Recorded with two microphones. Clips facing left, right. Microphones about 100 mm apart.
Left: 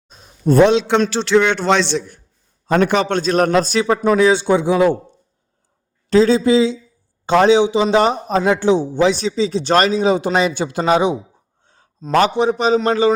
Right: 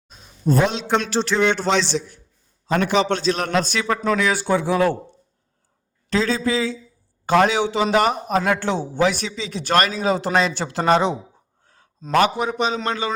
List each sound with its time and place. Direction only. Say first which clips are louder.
0.4 s a sound: left 8 dB; 70° left (ahead or behind)
1.7 s a man's voice: left 4 dB; 60° left (ahead or behind); by 3.8 s 40° left (ahead or behind)
3.8 s speech: left 7 dB; 25° left (ahead or behind)
6.1 s speech: left 8 dB; 30° left (ahead or behind)
8.5 s a man's voice: left 6 dB; 15° left (ahead or behind)
11.6 s a sound: left 2 dB; 25° left (ahead or behind)
12.1 s a man's voice: left 4 dB; 30° left (ahead or behind)